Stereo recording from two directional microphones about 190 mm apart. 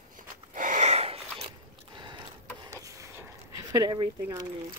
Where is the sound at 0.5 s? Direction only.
45° right (ahead or behind).